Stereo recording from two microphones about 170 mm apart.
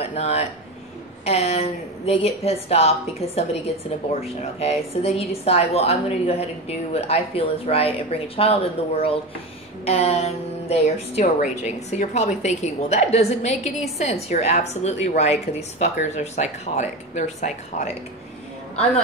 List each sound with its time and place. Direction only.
0.0 s speech: 40° left (ahead or behind)